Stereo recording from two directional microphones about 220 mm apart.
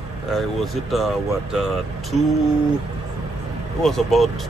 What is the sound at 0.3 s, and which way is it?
A man's voice, centre (ahead or behind).